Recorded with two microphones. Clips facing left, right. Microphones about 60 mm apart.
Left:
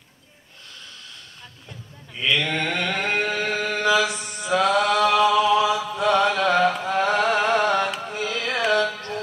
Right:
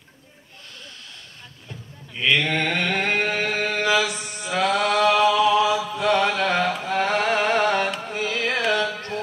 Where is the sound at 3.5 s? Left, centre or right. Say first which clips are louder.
Left 1 dB; right.